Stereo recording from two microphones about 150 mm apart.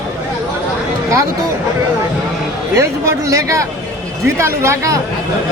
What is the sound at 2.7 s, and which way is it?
A man's voice, 20° right (ahead or behind).